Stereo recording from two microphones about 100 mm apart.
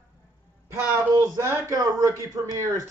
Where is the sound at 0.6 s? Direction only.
35° right (ahead or behind).